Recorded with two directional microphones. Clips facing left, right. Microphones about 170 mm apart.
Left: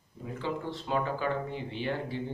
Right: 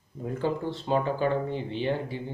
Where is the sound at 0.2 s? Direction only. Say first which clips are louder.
Right 8 dB; 45° right (ahead or behind).